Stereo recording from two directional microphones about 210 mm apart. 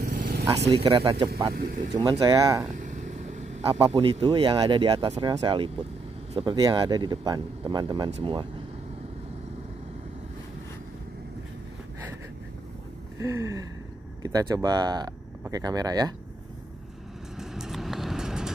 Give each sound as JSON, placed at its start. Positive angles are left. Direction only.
{"t": 0.0, "sound": "vehicle", "side_deg": -45}
{"t": 0.7, "sound": "speech", "side_deg": -25}
{"t": 1.5, "sound": "speech", "side_deg": -45}
{"t": 2.0, "sound": "speech", "side_deg": -15}
{"t": 2.7, "sound": "vehicle", "side_deg": -35}
{"t": 3.8, "sound": "speech", "side_deg": -25}
{"t": 13.2, "sound": "speech", "side_deg": -15}
{"t": 17.4, "sound": "vehicle", "side_deg": 0}